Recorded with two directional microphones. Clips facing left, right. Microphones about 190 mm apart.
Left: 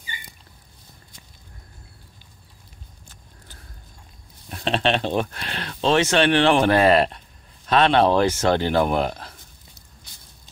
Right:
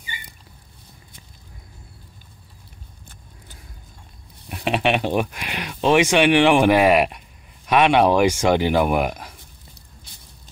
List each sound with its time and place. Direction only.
4.5 s speech: 10° right (ahead or behind)